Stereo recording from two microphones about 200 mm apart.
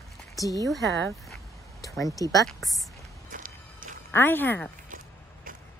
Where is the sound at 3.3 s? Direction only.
45° right (ahead or behind).